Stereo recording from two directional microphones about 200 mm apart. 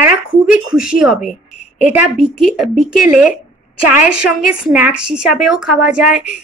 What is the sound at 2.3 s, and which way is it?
Speech, 5° right (ahead or behind).